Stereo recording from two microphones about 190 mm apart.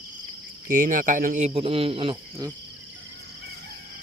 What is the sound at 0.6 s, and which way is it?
Speech, 45° right (ahead or behind).